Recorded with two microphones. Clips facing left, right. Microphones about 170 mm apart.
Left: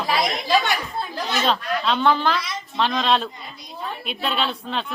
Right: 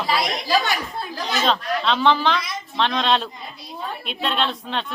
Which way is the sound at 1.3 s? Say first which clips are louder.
Right 1 dB; 5° left (ahead or behind).